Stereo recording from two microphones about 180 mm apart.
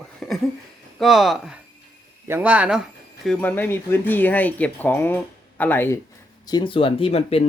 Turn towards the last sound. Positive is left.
turn(degrees=30)  # may be behind; listen again after turning